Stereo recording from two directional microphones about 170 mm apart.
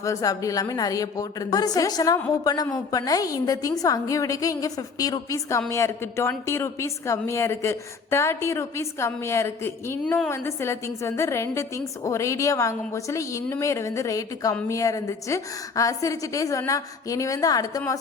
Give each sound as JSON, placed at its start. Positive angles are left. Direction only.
{"t": 0.0, "sound": "a woman's voice", "side_deg": 20}